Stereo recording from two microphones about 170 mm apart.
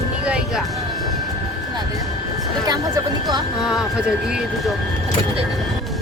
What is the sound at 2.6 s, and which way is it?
Music, 25° right (ahead or behind).